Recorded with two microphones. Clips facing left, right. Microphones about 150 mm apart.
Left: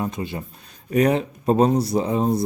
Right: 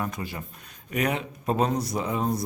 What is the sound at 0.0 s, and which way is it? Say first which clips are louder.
Speech: left 5 dB; 25° left (ahead or behind).